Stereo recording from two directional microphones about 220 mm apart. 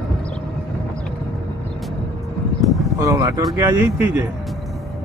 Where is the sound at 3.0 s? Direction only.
15° right (ahead or behind).